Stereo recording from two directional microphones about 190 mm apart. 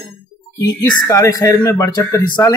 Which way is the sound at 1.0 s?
15° left (ahead or behind).